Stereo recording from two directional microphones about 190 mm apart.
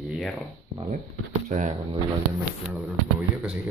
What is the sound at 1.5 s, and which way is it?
Speech, 40° right (ahead or behind).